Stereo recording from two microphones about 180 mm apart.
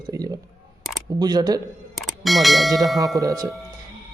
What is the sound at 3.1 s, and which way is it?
Speech, 20° right (ahead or behind).